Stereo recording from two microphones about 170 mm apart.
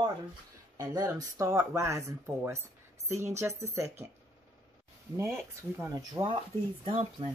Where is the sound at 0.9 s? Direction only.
20° right (ahead or behind).